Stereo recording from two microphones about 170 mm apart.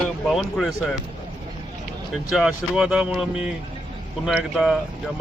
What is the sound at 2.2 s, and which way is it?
Speech, 5° right (ahead or behind).